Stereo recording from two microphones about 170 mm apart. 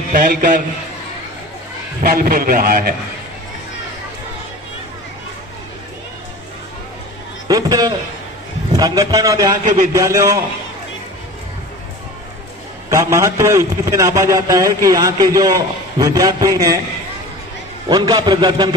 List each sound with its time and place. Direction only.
0.1 s a man's voice: 60° right (ahead or behind)
2.0 s a man's voice: 60° right (ahead or behind)
7.4 s a sound: 20° right (ahead or behind)
8.7 s a man's voice: 20° right (ahead or behind)
12.9 s a man's voice: 15° right (ahead or behind)
17.8 s a man's voice: 25° right (ahead or behind)